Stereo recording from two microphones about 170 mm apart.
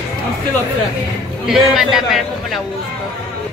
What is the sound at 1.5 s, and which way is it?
A man's voice, centre (ahead or behind).